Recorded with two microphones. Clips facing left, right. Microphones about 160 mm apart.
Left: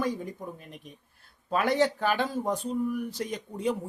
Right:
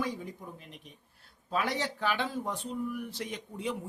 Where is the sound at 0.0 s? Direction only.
45° left (ahead or behind).